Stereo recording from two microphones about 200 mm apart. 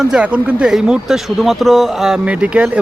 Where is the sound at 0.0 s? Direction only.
5° right (ahead or behind).